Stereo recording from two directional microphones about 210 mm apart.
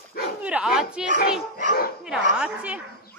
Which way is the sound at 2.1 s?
5° right (ahead or behind).